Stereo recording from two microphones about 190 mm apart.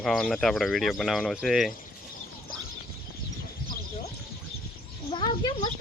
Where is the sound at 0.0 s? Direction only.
Centre (ahead or behind).